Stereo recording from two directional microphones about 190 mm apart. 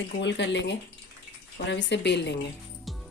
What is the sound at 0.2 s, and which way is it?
Speech, 70° left (ahead or behind).